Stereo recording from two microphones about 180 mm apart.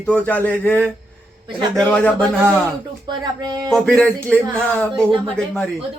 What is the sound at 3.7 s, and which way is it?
Speech, centre (ahead or behind).